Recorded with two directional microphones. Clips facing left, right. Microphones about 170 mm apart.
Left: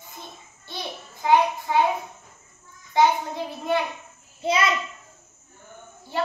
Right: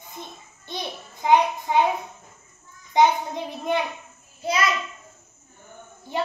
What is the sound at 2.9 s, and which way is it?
Child singing, 20° right (ahead or behind).